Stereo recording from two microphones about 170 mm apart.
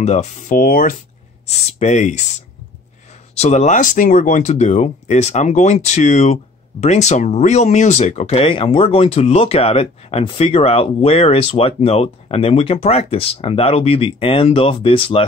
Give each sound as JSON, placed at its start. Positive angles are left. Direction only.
{"t": 0.0, "sound": "speech", "side_deg": 40}
{"t": 1.7, "sound": "speech", "side_deg": 40}
{"t": 3.3, "sound": "speech", "side_deg": 40}